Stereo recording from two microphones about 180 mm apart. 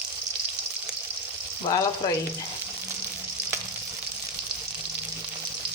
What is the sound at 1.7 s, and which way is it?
Frying, 20° left (ahead or behind).